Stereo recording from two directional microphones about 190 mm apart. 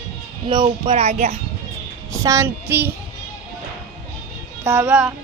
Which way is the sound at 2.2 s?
15° right (ahead or behind).